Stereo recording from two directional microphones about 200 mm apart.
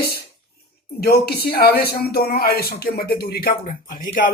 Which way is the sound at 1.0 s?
50° left (ahead or behind).